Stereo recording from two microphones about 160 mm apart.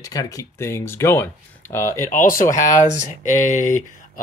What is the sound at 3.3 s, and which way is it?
Speech, 50° left (ahead or behind).